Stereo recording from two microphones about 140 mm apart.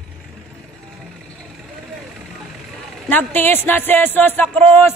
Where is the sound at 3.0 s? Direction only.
15° left (ahead or behind).